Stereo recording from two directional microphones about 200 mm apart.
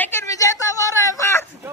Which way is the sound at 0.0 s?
10° left (ahead or behind).